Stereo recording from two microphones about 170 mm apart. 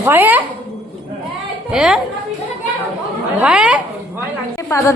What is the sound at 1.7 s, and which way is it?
Speech, 5° right (ahead or behind).